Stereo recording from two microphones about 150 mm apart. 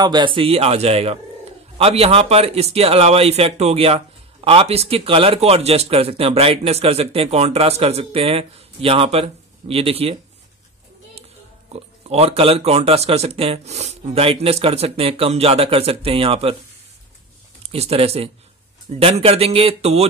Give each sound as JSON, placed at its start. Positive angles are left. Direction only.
{"t": 0.0, "sound": "speech", "side_deg": -30}
{"t": 11.7, "sound": "speech", "side_deg": -40}
{"t": 17.6, "sound": "speech", "side_deg": -40}